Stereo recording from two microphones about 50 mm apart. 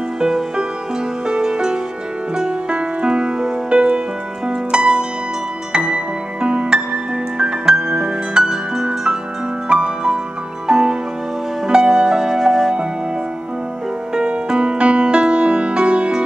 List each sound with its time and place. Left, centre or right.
0.2 s music: centre
4.5 s harp: centre
5.7 s music: centre
14.1 s music: centre